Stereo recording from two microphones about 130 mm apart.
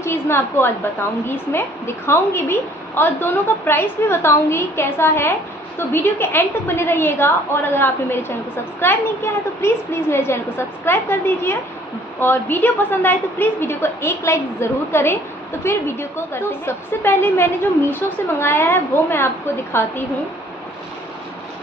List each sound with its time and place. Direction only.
0.0 s a woman's voice: 20° left (ahead or behind)